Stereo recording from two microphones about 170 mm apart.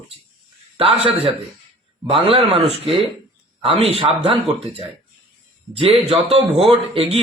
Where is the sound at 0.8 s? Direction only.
35° right (ahead or behind).